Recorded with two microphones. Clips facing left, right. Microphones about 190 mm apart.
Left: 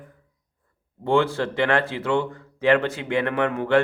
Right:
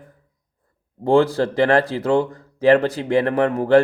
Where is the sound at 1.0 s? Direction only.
40° right (ahead or behind).